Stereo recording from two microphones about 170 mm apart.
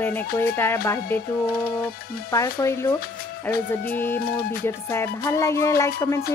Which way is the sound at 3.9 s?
10° left (ahead or behind).